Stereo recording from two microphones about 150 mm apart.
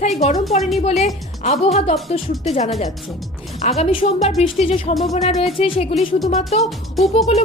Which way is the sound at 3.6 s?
45° left (ahead or behind).